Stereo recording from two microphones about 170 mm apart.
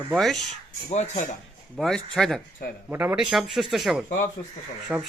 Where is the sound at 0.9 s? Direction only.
40° left (ahead or behind).